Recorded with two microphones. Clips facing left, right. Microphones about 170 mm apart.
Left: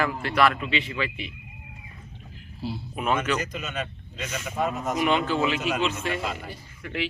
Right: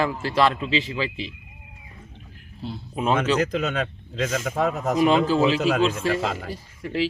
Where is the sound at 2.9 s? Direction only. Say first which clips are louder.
Right 4 dB; 30° right (ahead or behind).